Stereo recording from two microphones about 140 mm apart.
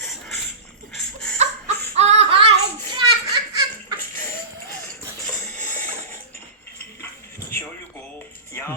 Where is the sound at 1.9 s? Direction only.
50° right (ahead or behind).